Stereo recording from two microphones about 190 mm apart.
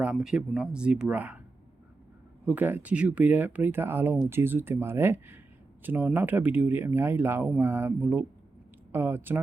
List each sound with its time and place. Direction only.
0.0 s speech: 5° right (ahead or behind)
2.5 s speech: 10° right (ahead or behind)